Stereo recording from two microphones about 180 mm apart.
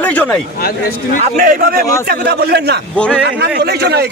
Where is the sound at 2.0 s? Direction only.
65° right (ahead or behind).